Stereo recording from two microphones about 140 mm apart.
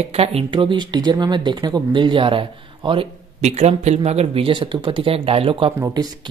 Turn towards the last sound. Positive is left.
turn(degrees=-30)  # may be behind; listen again after turning